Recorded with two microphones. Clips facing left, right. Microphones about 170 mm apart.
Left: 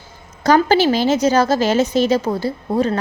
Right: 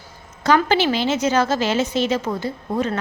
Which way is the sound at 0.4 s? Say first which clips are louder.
Left 4 dB; 40° left (ahead or behind).